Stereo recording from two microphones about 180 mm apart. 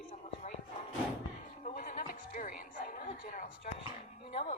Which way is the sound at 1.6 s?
45° left (ahead or behind).